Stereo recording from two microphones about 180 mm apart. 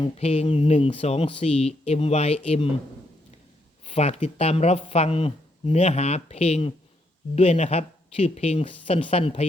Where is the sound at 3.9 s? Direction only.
35° left (ahead or behind).